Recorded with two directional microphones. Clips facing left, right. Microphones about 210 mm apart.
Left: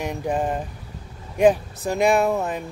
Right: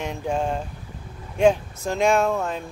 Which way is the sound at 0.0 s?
10° left (ahead or behind).